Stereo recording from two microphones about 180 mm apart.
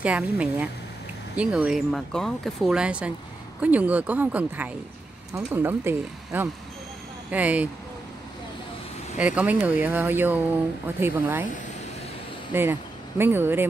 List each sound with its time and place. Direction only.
0.0 s speech: 5° right (ahead or behind)
9.2 s speech: 5° right (ahead or behind)
12.5 s speech: 10° right (ahead or behind)